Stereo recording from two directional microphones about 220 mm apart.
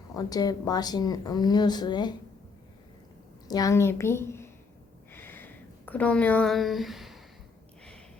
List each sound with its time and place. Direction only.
0.1 s speech: 15° left (ahead or behind)
3.5 s speech: 15° left (ahead or behind)
5.1 s a sound: 10° left (ahead or behind)